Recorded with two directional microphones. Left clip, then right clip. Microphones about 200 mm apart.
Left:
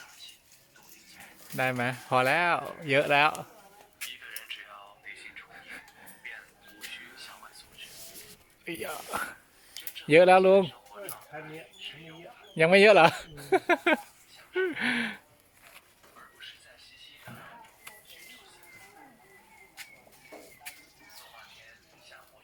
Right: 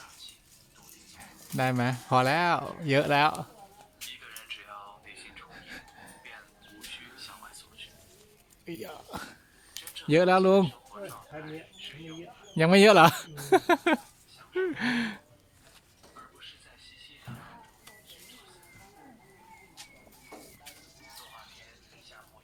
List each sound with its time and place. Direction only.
1.2 s speech: 10° right (ahead or behind)
5.2 s whispering: 10° right (ahead or behind)
6.9 s music: 5° right (ahead or behind)
8.6 s a sound: 5° left (ahead or behind)
12.5 s speech: 10° right (ahead or behind)